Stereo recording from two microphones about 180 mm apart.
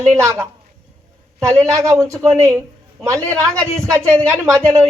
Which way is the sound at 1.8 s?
15° right (ahead or behind).